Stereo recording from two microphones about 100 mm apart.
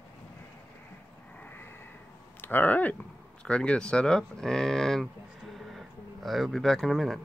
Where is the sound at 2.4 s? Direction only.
20° left (ahead or behind).